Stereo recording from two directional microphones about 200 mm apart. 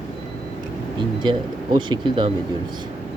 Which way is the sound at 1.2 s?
25° right (ahead or behind).